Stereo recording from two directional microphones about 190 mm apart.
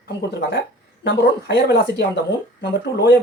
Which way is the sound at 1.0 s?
60° left (ahead or behind).